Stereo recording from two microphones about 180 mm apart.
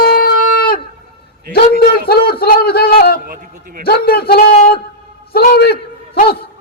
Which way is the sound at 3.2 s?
60° right (ahead or behind).